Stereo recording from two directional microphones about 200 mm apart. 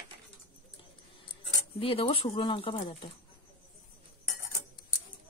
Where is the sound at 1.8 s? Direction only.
30° left (ahead or behind).